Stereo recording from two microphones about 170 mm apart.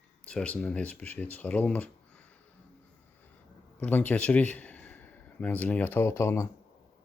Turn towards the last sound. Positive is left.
turn(degrees=15)  # may be behind; listen again after turning